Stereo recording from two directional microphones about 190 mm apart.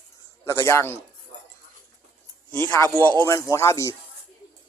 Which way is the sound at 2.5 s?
10° left (ahead or behind).